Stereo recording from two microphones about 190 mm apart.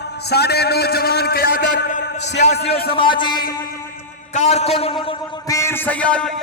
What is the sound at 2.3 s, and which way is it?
Speech, 60° left (ahead or behind).